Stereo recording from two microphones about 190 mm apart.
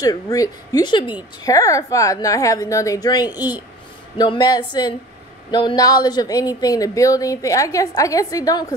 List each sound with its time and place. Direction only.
0.0 s a woman's voice: 20° left (ahead or behind)